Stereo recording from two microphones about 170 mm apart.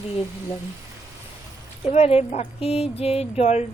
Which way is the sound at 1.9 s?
35° left (ahead or behind).